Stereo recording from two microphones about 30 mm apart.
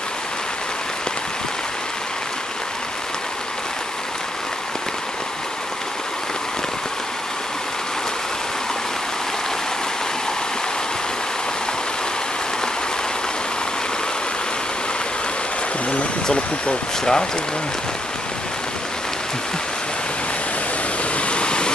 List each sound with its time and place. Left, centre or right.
17.0 s speech: left
21.3 s waterfall: left